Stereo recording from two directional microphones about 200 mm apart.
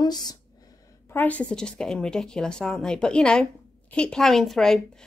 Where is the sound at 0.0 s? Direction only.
20° left (ahead or behind).